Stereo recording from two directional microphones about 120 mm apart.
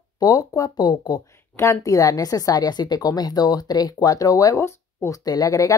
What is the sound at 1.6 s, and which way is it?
A woman's voice, 25° left (ahead or behind).